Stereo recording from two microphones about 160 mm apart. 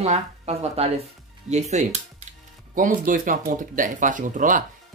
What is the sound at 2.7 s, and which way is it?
Speech, 55° right (ahead or behind).